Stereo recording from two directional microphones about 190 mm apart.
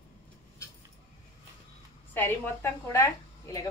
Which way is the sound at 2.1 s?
10° left (ahead or behind).